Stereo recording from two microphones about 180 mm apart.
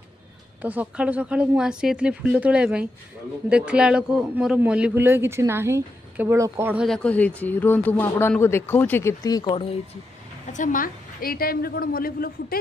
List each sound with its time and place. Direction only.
0.6 s a man's voice: 10° right (ahead or behind)
6.9 s speech: 5° left (ahead or behind); by 9.8 s 30° left (ahead or behind)
10.5 s a woman's voice: 45° left (ahead or behind)